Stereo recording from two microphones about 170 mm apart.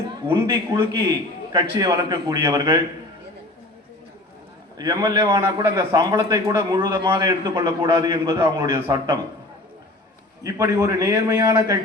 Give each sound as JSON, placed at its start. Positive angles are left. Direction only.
{"t": 0.3, "sound": "a man's voice", "side_deg": -25}
{"t": 4.8, "sound": "a man's voice", "side_deg": -25}
{"t": 10.4, "sound": "a man's voice", "side_deg": -20}